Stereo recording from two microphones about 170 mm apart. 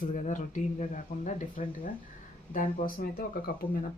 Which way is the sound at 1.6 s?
45° left (ahead or behind).